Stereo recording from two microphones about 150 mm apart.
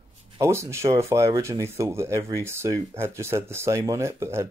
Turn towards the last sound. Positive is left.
turn(degrees=-20)  # may be behind; listen again after turning